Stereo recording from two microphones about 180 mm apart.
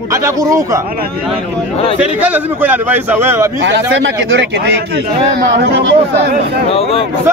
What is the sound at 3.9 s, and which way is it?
Speech, 75° right (ahead or behind).